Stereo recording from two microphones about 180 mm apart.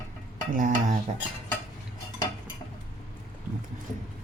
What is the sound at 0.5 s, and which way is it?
Speech, 50° right (ahead or behind).